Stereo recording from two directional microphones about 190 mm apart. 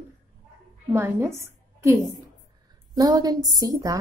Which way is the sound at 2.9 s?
20° right (ahead or behind).